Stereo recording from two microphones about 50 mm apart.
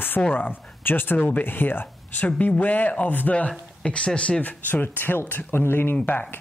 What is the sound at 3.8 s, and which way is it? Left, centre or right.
Speech, centre.